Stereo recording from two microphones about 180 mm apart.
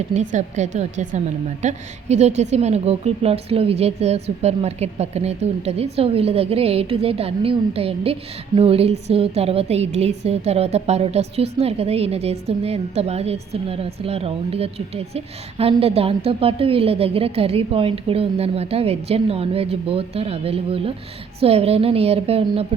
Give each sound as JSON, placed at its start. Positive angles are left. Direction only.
{"t": 0.1, "sound": "a woman's voice", "side_deg": -40}